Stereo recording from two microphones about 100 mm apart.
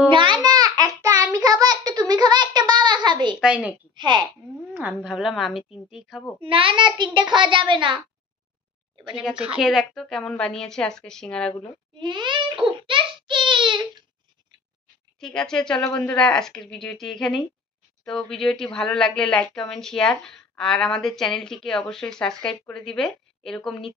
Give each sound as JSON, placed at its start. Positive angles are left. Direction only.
{"t": 0.1, "sound": "child singing", "side_deg": -55}
{"t": 3.3, "sound": "a woman's voice", "side_deg": -10}
{"t": 3.9, "sound": "a woman's voice", "side_deg": -50}
{"t": 5.0, "sound": "speech", "side_deg": 0}
{"t": 6.4, "sound": "a child's voice", "side_deg": -60}
{"t": 9.1, "sound": "a woman's voice", "side_deg": -10}
{"t": 12.0, "sound": "a child's voice", "side_deg": -50}
{"t": 12.6, "sound": "a sound", "side_deg": -55}
{"t": 15.1, "sound": "speech", "side_deg": 5}